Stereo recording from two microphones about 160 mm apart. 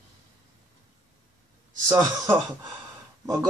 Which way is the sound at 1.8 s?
20° right (ahead or behind).